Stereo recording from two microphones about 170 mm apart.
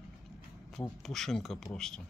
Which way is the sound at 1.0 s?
Centre (ahead or behind).